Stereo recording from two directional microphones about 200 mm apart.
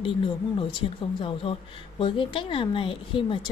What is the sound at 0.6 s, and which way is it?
Speech, 25° left (ahead or behind).